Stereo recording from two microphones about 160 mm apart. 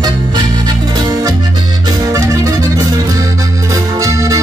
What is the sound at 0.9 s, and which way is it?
Accordion, 25° right (ahead or behind).